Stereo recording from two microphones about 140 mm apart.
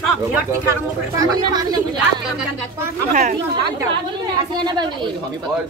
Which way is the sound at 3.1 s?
55° right (ahead or behind).